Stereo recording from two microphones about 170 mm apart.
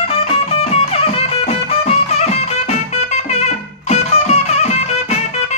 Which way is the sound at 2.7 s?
40° left (ahead or behind).